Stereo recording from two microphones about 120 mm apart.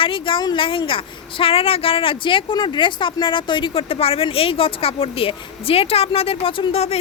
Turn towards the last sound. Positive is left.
turn(degrees=60)  # may be behind; listen again after turning